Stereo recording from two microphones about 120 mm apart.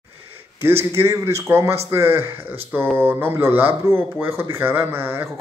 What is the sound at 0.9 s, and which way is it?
A man's voice, 20° right (ahead or behind).